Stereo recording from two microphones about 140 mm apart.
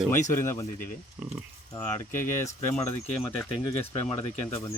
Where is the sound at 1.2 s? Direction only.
5° right (ahead or behind).